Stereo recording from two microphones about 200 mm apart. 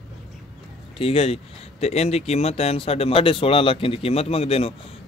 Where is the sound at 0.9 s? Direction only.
30° left (ahead or behind).